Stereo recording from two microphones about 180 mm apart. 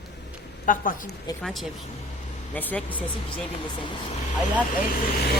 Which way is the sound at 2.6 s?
10° left (ahead or behind).